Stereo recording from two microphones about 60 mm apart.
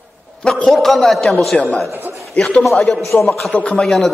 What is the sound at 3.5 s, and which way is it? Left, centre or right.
Speech, left.